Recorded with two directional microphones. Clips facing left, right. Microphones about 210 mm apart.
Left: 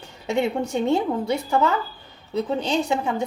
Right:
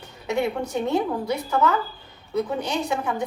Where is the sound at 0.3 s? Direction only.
25° left (ahead or behind).